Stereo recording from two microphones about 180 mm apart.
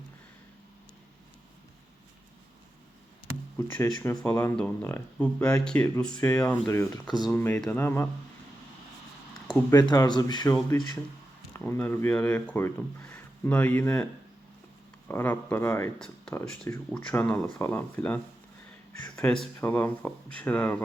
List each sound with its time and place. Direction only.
3.6 s speech: 15° left (ahead or behind)
9.6 s speech: 20° left (ahead or behind)
11.6 s speech: 10° left (ahead or behind)